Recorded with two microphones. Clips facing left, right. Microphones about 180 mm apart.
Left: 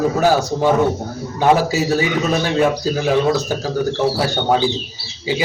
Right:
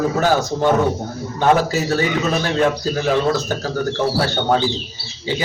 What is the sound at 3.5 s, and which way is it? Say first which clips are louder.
Speech: left 2 dB; 10° left (ahead or behind).